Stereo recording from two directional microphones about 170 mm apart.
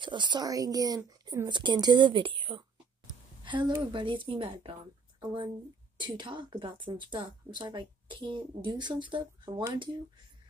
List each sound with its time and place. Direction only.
0.0 s speech: 30° right (ahead or behind)
5.9 s speech: 25° right (ahead or behind)